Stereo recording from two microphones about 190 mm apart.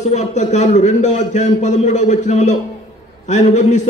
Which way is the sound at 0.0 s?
40° left (ahead or behind).